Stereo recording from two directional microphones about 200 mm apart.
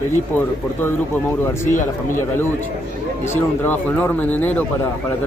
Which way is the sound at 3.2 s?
10° left (ahead or behind).